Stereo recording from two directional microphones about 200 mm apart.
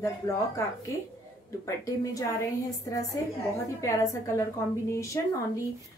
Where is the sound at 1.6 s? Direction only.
15° left (ahead or behind).